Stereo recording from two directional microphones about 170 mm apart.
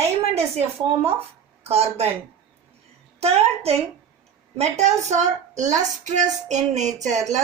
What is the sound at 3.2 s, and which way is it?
A woman's voice, 40° right (ahead or behind).